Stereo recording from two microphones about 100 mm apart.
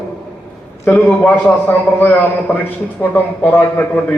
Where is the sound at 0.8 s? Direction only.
20° left (ahead or behind).